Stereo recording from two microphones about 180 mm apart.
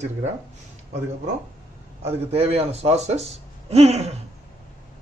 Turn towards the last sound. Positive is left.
turn(degrees=-35)  # may be behind; listen again after turning